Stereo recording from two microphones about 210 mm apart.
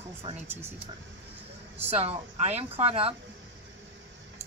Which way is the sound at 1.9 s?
30° right (ahead or behind).